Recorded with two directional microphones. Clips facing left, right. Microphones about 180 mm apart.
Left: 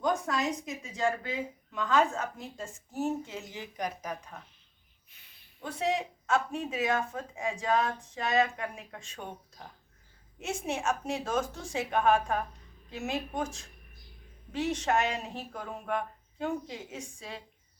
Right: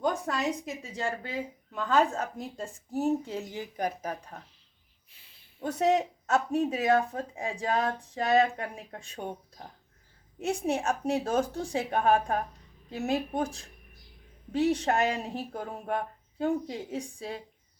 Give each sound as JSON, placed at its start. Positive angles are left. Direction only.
{"t": 0.0, "sound": "speech", "side_deg": -35}
{"t": 5.1, "sound": "a sound", "side_deg": -30}
{"t": 5.6, "sound": "speech", "side_deg": -45}
{"t": 10.4, "sound": "speech", "side_deg": -35}